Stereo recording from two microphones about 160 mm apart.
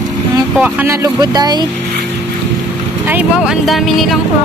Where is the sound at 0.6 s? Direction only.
15° right (ahead or behind).